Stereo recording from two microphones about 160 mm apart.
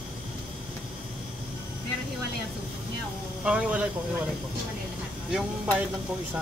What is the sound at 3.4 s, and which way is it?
Speech, 5° right (ahead or behind).